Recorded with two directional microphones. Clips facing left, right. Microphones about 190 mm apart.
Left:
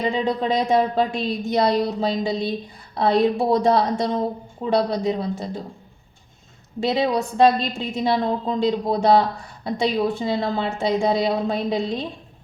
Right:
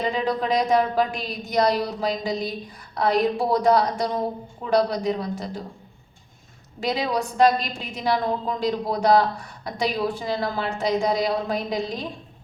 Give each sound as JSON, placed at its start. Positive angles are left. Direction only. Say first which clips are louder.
{"t": 0.1, "sound": "speech", "louder": "left 2 dB", "side_deg": 25}
{"t": 6.7, "sound": "speech", "louder": "left 4 dB", "side_deg": 25}